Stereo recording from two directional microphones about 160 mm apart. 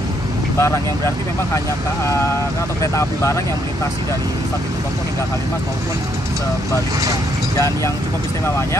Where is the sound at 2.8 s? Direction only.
20° left (ahead or behind).